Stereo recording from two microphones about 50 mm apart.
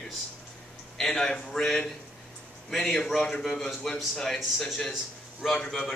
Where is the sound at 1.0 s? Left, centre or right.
Centre.